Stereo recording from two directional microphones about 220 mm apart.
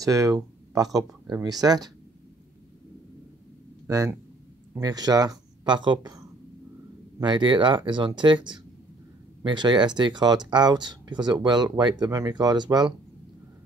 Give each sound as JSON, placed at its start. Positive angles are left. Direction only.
{"t": 0.0, "sound": "speech", "side_deg": -15}
{"t": 3.8, "sound": "speech", "side_deg": -15}